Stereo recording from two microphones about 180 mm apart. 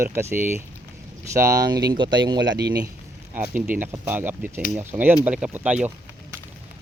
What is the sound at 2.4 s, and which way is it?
Speech, 75° right (ahead or behind).